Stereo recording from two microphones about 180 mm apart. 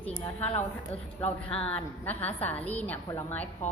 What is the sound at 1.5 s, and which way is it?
A woman's voice, 5° left (ahead or behind).